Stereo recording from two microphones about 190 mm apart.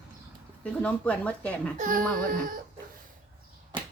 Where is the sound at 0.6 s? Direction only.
5° left (ahead or behind).